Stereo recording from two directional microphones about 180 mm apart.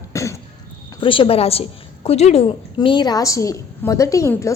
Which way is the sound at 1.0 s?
30° left (ahead or behind).